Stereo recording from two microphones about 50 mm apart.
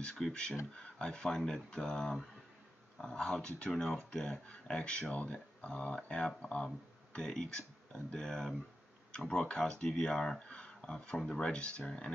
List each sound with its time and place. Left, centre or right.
0.0 s speech: centre